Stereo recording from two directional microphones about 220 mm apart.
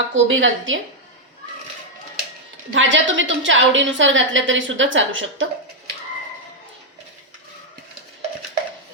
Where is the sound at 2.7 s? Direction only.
60° right (ahead or behind).